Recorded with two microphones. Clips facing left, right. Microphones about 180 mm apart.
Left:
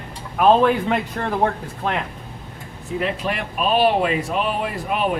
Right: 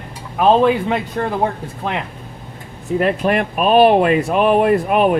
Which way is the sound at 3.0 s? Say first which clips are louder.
Right 8 dB; 55° right (ahead or behind).